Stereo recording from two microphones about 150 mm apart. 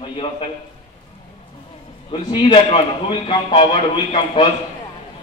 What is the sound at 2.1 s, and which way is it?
Speech, 35° left (ahead or behind).